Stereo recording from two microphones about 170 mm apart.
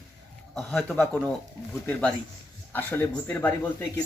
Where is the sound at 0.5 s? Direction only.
Centre (ahead or behind).